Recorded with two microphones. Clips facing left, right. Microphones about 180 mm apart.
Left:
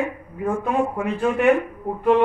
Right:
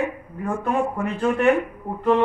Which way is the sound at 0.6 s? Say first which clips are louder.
Right 1 dB; 15° left (ahead or behind).